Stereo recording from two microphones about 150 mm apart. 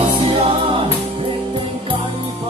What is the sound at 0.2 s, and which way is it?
Music, 35° right (ahead or behind).